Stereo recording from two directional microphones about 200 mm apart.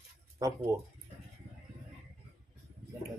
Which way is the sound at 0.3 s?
15° right (ahead or behind).